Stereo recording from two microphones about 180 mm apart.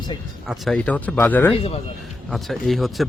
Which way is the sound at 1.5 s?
30° left (ahead or behind).